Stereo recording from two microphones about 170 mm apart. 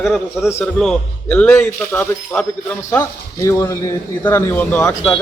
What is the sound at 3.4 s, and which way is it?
Speech, 15° left (ahead or behind).